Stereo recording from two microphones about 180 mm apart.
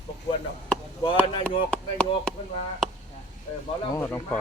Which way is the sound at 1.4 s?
5° left (ahead or behind).